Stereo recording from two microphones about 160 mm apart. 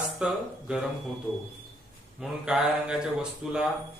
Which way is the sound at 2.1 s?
5° right (ahead or behind).